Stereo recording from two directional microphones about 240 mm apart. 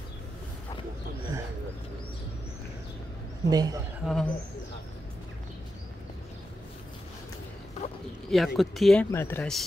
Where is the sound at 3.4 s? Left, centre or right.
Centre.